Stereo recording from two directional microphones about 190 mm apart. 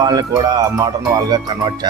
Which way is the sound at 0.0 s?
20° right (ahead or behind).